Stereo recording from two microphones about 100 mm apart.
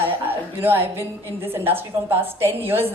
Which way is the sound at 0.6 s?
20° right (ahead or behind).